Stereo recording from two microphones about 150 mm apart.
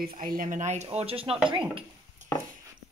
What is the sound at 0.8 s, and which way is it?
Speech, 40° right (ahead or behind).